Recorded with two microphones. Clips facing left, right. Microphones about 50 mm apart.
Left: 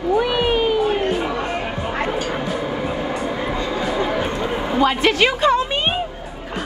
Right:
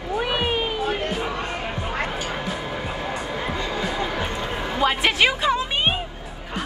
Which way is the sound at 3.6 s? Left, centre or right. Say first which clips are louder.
Left 5 dB; left.